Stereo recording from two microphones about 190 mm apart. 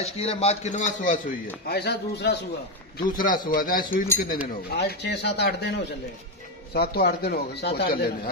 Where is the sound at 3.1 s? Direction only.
45° left (ahead or behind).